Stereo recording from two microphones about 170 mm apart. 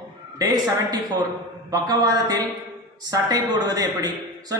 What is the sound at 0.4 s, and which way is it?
A man's voice, 20° right (ahead or behind).